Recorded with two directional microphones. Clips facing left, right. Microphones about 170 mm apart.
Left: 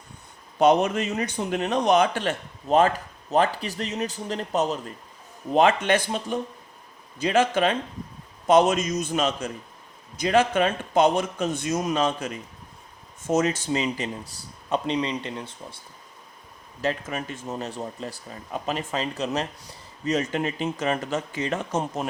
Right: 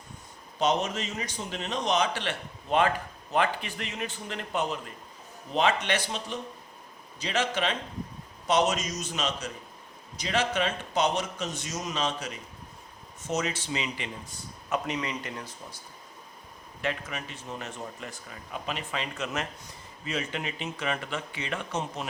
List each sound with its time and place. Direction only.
0.6 s speech: 55° left (ahead or behind)
14.7 s speech: 30° left (ahead or behind)
16.8 s speech: 40° left (ahead or behind)